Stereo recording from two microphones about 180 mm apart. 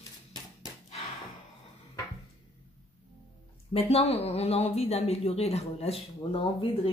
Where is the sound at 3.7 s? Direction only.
35° left (ahead or behind).